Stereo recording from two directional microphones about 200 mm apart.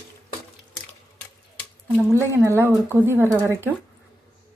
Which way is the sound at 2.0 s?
15° right (ahead or behind).